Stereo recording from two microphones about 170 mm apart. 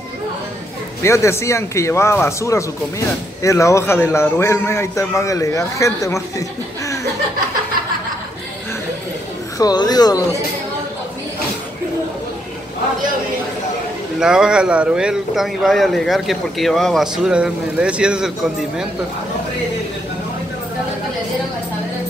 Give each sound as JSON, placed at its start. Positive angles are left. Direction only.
{"t": 1.0, "sound": "a man's voice", "side_deg": 15}
{"t": 9.6, "sound": "speech", "side_deg": 25}
{"t": 14.2, "sound": "a man's voice", "side_deg": -5}